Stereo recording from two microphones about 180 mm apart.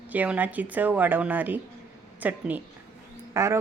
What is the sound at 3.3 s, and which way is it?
Frog, 15° right (ahead or behind).